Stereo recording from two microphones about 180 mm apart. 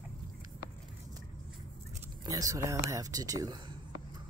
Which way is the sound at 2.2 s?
20° right (ahead or behind).